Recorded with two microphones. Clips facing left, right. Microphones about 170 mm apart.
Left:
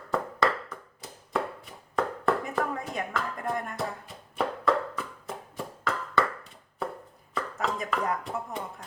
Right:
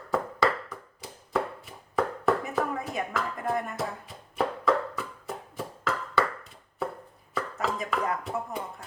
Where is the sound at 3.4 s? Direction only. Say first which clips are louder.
Right 3 dB; centre (ahead or behind).